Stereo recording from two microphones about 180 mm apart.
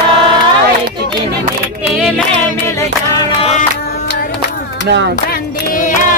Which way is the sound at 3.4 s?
40° left (ahead or behind).